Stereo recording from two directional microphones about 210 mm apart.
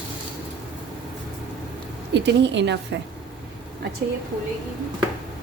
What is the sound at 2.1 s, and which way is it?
Speech, 55° right (ahead or behind).